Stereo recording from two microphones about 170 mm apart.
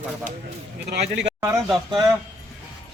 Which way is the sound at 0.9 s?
85° right.